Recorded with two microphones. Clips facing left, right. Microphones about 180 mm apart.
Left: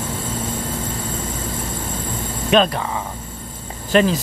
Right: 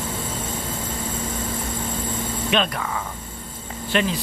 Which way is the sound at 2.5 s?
40° left (ahead or behind).